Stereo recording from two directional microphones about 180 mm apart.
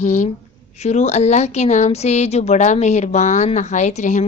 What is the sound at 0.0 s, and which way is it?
A woman's voice, 45° left (ahead or behind).